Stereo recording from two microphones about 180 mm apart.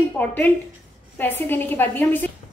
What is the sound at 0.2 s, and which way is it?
A woman's voice, 10° left (ahead or behind).